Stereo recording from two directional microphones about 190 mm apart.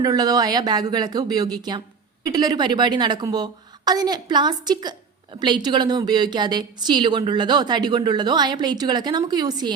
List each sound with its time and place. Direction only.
0.0 s a woman's voice: 20° right (ahead or behind)